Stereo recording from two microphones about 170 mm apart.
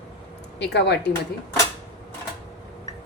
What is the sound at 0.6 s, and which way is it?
Speech, 85° left.